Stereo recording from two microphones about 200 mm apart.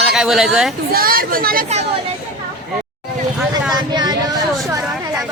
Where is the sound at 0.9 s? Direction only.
45° right (ahead or behind).